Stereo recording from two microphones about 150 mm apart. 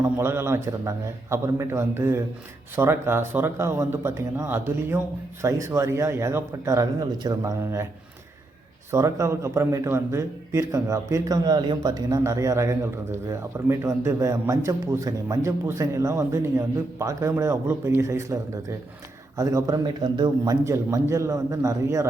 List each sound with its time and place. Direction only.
0.0 s a man's voice: 15° right (ahead or behind)
8.9 s a man's voice: 20° right (ahead or behind)